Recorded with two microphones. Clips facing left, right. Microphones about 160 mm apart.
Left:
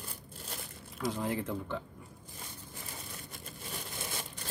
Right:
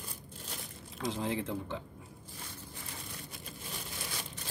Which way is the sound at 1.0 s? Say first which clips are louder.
Left 1 dB; 25° right (ahead or behind).